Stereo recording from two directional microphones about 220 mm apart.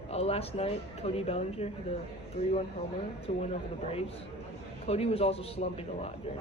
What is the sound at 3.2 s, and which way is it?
Speech, 25° left (ahead or behind).